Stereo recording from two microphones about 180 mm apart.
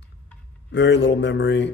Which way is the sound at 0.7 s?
85° left.